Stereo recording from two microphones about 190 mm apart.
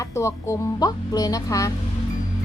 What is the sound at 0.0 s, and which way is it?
Speech, 15° left (ahead or behind).